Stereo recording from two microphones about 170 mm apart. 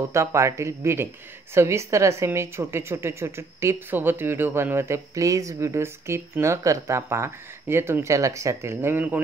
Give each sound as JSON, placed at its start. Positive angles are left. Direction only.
{"t": 0.1, "sound": "a woman's voice", "side_deg": -15}